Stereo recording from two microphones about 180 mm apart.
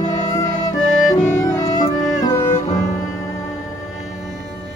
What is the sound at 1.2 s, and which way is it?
Music, 15° left (ahead or behind).